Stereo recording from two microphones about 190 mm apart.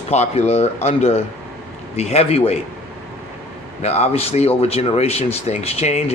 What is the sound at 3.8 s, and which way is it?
Speech, 35° left (ahead or behind).